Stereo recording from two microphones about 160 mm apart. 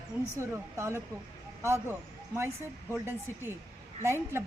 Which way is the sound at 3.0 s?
15° right (ahead or behind).